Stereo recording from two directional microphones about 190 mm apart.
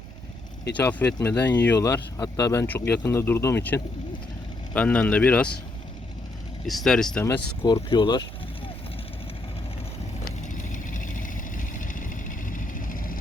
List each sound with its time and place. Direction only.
0.8 s speech: 10° left (ahead or behind)
6.7 s speech: centre (ahead or behind)
7.6 s speech: 25° left (ahead or behind)
10.5 s vehicle: 45° left (ahead or behind)